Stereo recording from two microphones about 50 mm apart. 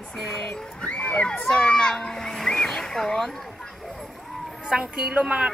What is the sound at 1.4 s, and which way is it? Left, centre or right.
A child's voice, centre.